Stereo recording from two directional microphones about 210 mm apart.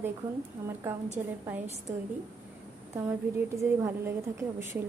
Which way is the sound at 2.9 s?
10° right (ahead or behind).